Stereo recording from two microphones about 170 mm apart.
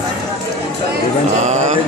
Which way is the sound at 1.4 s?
45° right (ahead or behind).